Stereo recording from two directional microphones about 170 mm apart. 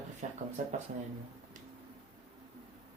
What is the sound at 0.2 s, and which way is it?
Speech, 45° right (ahead or behind).